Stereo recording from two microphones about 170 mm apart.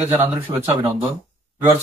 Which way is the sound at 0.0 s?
10° right (ahead or behind).